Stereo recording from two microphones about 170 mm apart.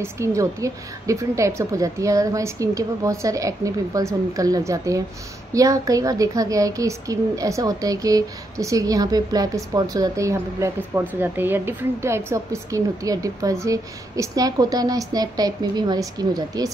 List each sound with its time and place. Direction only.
0.0 s speech: 15° right (ahead or behind)